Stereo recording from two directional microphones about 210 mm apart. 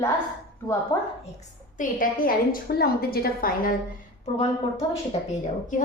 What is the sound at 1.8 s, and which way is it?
A woman's voice, 40° left (ahead or behind).